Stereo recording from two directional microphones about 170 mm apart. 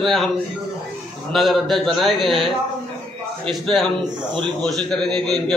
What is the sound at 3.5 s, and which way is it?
A man's voice, centre (ahead or behind).